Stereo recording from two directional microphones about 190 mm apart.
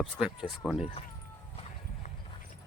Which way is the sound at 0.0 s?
5° right (ahead or behind).